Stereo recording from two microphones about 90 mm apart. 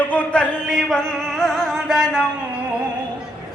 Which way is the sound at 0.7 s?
5° left (ahead or behind).